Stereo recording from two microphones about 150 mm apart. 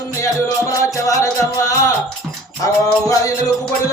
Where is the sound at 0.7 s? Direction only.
20° left (ahead or behind).